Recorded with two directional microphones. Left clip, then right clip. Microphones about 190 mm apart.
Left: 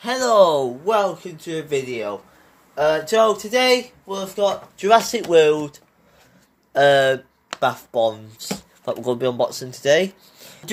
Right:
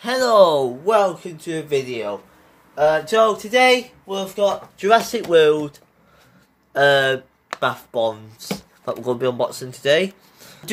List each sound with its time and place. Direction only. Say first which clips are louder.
0.0 s speech: right 1 dB; centre (ahead or behind)
2.7 s speech: right 1 dB; 30° left (ahead or behind); by 10.6 s 10° left (ahead or behind)